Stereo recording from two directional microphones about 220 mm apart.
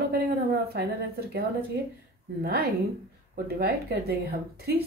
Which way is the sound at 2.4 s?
45° right (ahead or behind).